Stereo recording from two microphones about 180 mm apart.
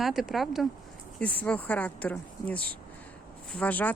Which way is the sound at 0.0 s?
Centre (ahead or behind).